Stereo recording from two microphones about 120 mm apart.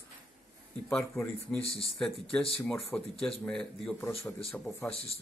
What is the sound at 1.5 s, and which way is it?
Speech, 55° left (ahead or behind).